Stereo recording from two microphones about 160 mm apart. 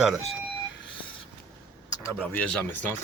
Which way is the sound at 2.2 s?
10° left (ahead or behind).